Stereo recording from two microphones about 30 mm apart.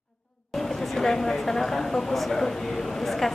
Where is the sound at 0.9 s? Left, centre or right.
Centre.